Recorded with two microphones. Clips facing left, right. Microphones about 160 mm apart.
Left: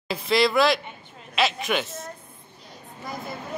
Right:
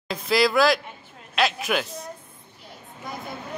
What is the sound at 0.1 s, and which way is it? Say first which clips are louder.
A man's voice: even; centre (ahead or behind).